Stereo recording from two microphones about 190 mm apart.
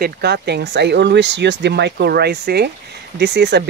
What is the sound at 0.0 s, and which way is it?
Speech, 60° right (ahead or behind).